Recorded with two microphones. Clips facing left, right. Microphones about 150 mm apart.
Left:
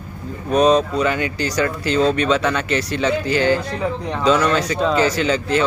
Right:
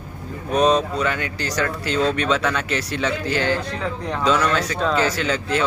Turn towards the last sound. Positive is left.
turn(degrees=0)  # may be behind; listen again after turning